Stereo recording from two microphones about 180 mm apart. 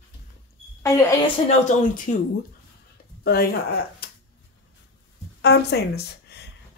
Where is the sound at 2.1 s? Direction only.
45° left (ahead or behind).